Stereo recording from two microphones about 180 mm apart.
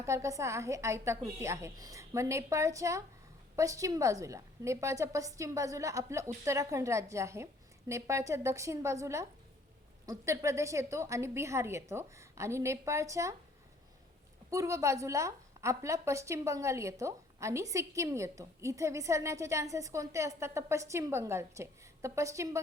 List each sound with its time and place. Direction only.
0.0 s a woman's voice: 15° right (ahead or behind)
14.5 s a woman's voice: 15° right (ahead or behind)